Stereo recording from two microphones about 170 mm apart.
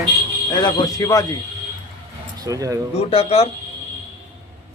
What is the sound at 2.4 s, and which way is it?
Speech, 20° right (ahead or behind).